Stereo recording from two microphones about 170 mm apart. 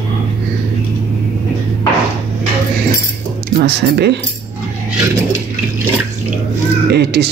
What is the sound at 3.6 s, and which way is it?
Speech, 80° right.